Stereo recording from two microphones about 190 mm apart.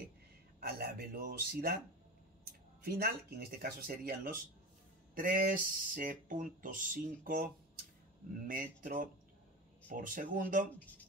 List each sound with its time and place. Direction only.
0.6 s speech: 55° right (ahead or behind)
2.8 s speech: 55° right (ahead or behind)